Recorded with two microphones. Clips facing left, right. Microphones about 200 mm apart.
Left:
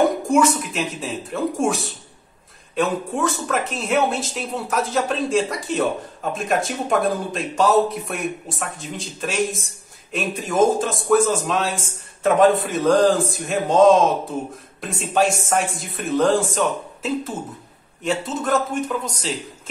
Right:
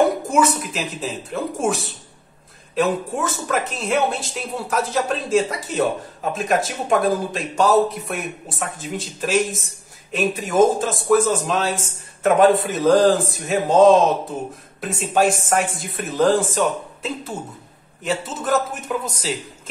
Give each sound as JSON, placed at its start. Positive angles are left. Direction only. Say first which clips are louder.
{"t": 0.3, "sound": "speech", "louder": "left 2 dB", "side_deg": 0}